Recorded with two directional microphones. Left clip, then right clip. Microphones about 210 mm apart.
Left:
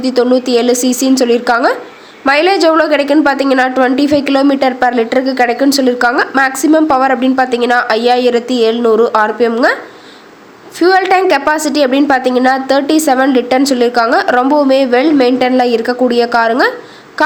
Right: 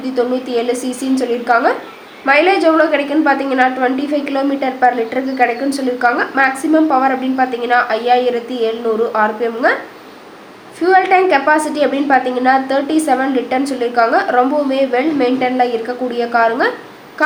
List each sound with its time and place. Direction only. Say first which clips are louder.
0.0 s a woman's voice: left 6 dB; 40° left (ahead or behind)
10.8 s a woman's voice: left 2 dB; 40° left (ahead or behind)